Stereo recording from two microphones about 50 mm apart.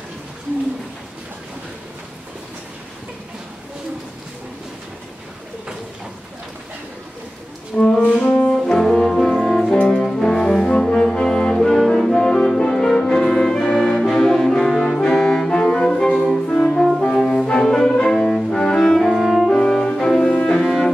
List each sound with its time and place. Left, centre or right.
7.7 s music: centre
8.5 s brass instrument: centre
9.8 s brass instrument: left
10.0 s brass instrument: centre
13.7 s saxophone: centre
15.5 s music: centre
17.0 s brass instrument: left
17.4 s music: centre
19.5 s brass instrument: centre
20.1 s music: centre